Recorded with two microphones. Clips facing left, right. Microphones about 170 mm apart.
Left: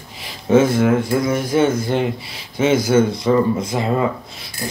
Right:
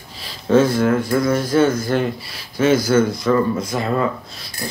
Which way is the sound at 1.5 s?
25° left (ahead or behind).